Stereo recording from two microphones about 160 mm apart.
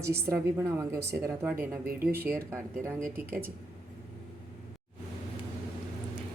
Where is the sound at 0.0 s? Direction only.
15° right (ahead or behind).